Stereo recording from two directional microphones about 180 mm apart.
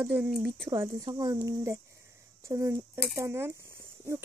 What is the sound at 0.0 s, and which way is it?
Speech, 10° right (ahead or behind).